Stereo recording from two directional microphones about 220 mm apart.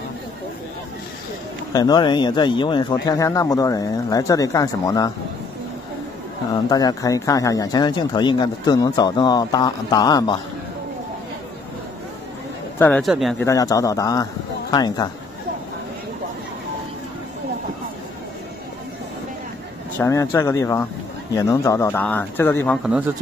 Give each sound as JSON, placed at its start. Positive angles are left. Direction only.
{"t": 1.7, "sound": "speech", "side_deg": 15}
{"t": 6.5, "sound": "speech", "side_deg": 15}
{"t": 12.7, "sound": "a man's voice", "side_deg": 5}
{"t": 13.5, "sound": "speech", "side_deg": 15}
{"t": 20.0, "sound": "speech", "side_deg": 15}